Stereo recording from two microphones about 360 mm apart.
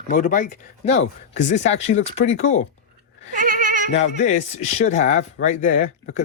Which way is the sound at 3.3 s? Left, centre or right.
Right.